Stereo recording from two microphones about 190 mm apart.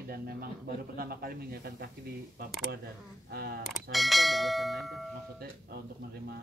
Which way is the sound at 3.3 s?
55° right (ahead or behind).